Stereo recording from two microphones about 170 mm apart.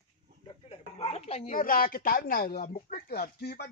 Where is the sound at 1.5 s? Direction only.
55° left (ahead or behind).